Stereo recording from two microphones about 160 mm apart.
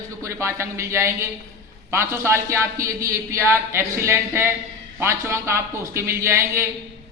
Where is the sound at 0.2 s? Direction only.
20° right (ahead or behind).